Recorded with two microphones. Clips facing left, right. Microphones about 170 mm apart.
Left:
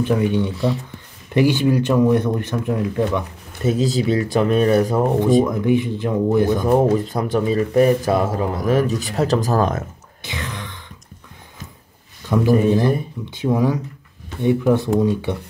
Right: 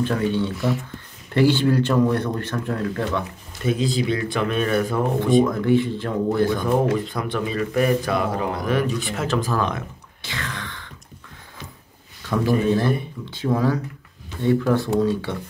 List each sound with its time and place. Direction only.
0.0 s speech: 15° left (ahead or behind)
0.6 s speech: 30° left (ahead or behind)
1.3 s speech: 15° left (ahead or behind)
3.6 s a man's voice: 40° left (ahead or behind)
5.4 s speech: 15° left (ahead or behind)
6.6 s a man's voice: 40° left (ahead or behind)
10.2 s a sound: 15° left (ahead or behind)
12.3 s speech: 15° left (ahead or behind)